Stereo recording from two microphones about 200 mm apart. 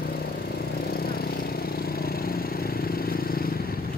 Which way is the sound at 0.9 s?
50° left (ahead or behind).